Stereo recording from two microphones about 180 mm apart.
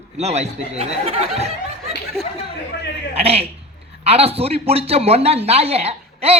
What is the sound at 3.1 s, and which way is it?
Speech, 35° right (ahead or behind).